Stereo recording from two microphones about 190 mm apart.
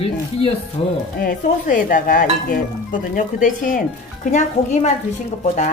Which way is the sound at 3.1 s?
40° left (ahead or behind).